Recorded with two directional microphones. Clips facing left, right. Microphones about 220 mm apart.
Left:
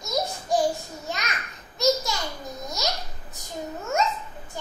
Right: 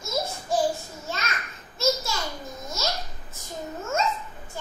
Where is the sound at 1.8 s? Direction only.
15° left (ahead or behind).